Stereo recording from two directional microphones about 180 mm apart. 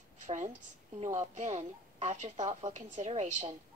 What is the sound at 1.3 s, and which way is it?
A woman's voice, 40° right (ahead or behind).